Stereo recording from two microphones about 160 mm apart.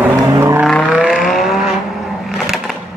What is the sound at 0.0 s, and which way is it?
Vehicle, 15° right (ahead or behind).